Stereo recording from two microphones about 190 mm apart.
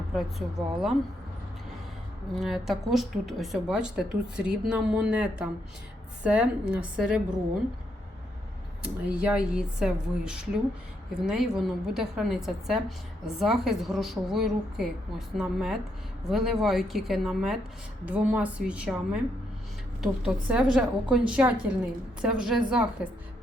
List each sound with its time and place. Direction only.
0.1 s speech: centre (ahead or behind)
2.3 s speech: centre (ahead or behind)
8.8 s speech: 5° right (ahead or behind)